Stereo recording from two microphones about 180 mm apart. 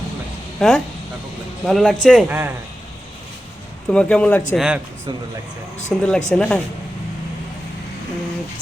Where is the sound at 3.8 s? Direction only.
5° left (ahead or behind).